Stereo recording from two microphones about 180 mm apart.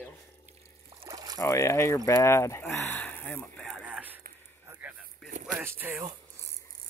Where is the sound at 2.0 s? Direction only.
15° left (ahead or behind); by 5.3 s 5° right (ahead or behind).